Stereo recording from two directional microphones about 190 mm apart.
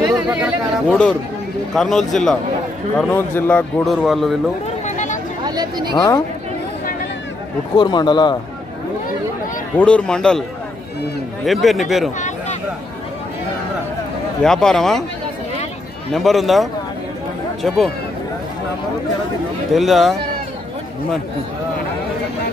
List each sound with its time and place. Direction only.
0.3 s a sound: 5° right (ahead or behind)
1.7 s a man's voice: centre (ahead or behind)
4.6 s a sound: 40° left (ahead or behind)
5.4 s a sound: 20° right (ahead or behind)
5.9 s a man's voice: 20° left (ahead or behind)
7.7 s a man's voice: 25° left (ahead or behind)
9.8 s a man's voice: 5° left (ahead or behind)
11.4 s a man's voice: centre (ahead or behind)
14.4 s a man's voice: 5° left (ahead or behind)
16.1 s a man's voice: centre (ahead or behind)
19.7 s a man's voice: centre (ahead or behind)